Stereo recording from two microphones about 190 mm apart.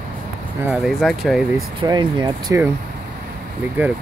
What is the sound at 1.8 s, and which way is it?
Speech, 25° right (ahead or behind).